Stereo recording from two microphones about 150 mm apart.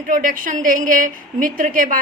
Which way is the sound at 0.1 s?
65° right (ahead or behind).